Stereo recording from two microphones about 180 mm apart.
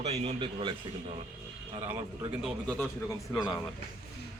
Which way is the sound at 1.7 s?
20° right (ahead or behind).